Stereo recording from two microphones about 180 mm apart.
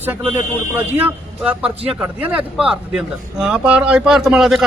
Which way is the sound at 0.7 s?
10° right (ahead or behind).